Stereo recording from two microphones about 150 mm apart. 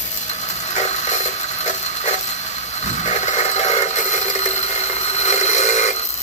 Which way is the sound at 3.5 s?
50° left (ahead or behind).